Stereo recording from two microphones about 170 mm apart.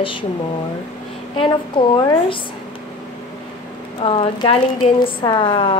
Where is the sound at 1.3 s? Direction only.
30° left (ahead or behind).